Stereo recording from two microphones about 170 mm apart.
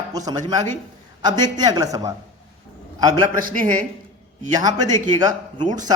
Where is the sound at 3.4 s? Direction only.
55° right (ahead or behind).